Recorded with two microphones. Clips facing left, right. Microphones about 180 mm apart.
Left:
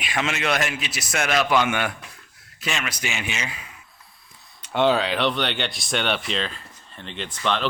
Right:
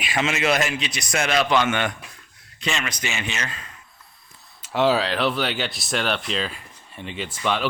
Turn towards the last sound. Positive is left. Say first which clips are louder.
# right 1 dB
turn(degrees=-10)  # may be behind; listen again after turning